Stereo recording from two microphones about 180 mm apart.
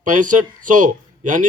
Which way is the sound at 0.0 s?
45° right (ahead or behind).